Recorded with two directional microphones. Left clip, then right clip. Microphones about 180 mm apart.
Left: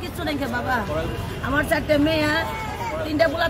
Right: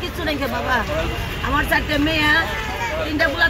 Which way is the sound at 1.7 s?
20° left (ahead or behind).